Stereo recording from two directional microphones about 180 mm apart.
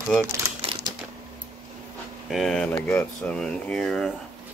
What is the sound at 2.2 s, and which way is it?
Speech, centre (ahead or behind).